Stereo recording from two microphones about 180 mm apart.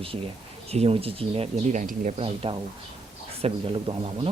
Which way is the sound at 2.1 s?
30° right (ahead or behind).